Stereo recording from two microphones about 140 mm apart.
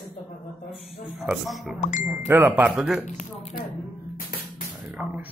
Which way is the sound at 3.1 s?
60° left (ahead or behind).